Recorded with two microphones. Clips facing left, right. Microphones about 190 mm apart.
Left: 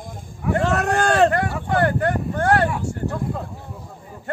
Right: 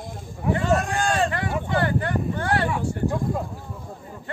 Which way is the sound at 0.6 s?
65° left (ahead or behind).